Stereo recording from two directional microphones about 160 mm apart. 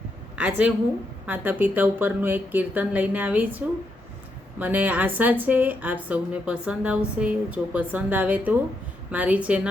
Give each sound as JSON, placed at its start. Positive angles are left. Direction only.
{"t": 0.3, "sound": "a woman's voice", "side_deg": -5}
{"t": 4.6, "sound": "a woman's voice", "side_deg": -10}